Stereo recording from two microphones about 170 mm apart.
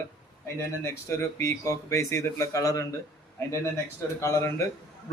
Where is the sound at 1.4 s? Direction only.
15° left (ahead or behind).